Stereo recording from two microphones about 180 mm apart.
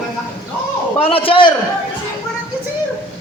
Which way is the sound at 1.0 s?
30° left (ahead or behind).